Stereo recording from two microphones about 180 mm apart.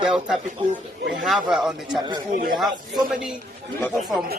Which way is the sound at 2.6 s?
Centre (ahead or behind).